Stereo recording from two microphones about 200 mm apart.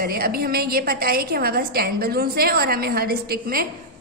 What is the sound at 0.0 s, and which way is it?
A woman's voice, 50° right (ahead or behind).